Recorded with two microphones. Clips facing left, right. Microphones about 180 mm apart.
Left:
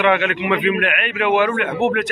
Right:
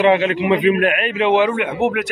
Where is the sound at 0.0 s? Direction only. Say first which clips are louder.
Right 3 dB; 30° right (ahead or behind).